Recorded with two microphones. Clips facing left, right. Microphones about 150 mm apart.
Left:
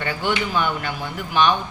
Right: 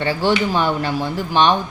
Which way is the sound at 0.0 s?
35° right (ahead or behind).